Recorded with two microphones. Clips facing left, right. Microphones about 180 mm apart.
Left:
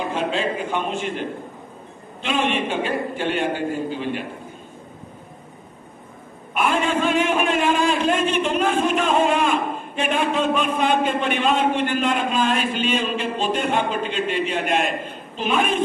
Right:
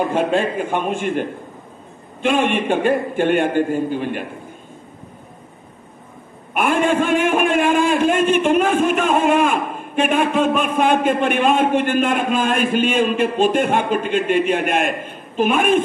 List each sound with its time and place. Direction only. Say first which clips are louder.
0.0 s a man's voice: right 5 dB; 50° right (ahead or behind)
2.2 s a man's voice: right 5 dB; 50° right (ahead or behind)
6.5 s a man's voice: right 4 dB; 50° right (ahead or behind)